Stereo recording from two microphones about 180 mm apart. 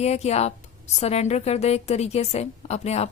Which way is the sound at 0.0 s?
35° left (ahead or behind).